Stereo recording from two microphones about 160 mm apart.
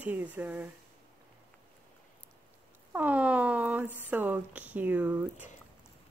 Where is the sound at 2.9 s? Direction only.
10° right (ahead or behind).